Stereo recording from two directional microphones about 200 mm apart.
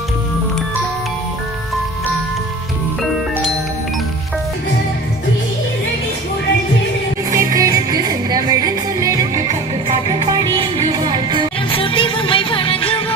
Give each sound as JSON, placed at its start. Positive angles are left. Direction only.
{"t": 7.3, "sound": "music", "side_deg": -15}
{"t": 11.7, "sound": "music", "side_deg": 25}